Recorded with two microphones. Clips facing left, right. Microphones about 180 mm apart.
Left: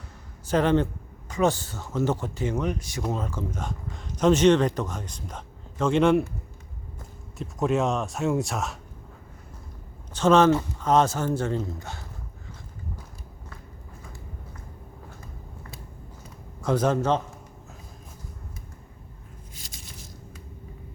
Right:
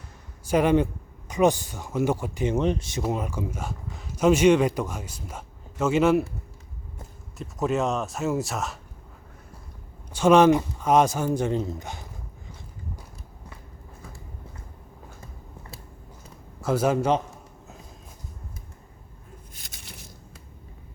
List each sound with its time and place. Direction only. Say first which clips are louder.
0.4 s speech: right 1 dB; 10° right (ahead or behind)
3.1 s speech: right 1 dB; 15° right (ahead or behind)
7.3 s speech: left 1 dB; centre (ahead or behind)
10.1 s speech: right 2 dB; 10° right (ahead or behind)
16.6 s a man's voice: even; 5° right (ahead or behind)
19.5 s a sound: left 1 dB; 60° right (ahead or behind)